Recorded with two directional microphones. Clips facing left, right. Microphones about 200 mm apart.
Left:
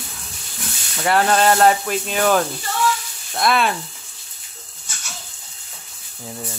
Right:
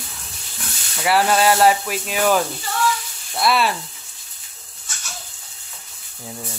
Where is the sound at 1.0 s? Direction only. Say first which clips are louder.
Even; 5° right (ahead or behind).